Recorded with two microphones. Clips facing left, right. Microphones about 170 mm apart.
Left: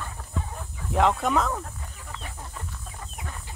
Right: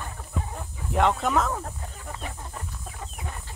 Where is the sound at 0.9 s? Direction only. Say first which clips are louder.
Left 1 dB; centre (ahead or behind).